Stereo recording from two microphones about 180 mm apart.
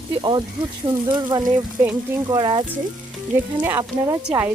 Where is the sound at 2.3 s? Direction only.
25° right (ahead or behind).